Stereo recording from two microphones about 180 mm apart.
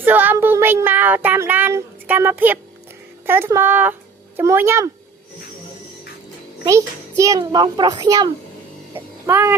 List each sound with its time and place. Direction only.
0.0 s child singing: 10° right (ahead or behind)
3.2 s speech: 10° right (ahead or behind)
6.7 s a child's voice: 15° right (ahead or behind)